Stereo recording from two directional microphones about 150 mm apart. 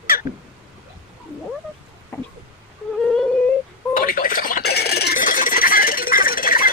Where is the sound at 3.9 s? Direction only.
70° left (ahead or behind).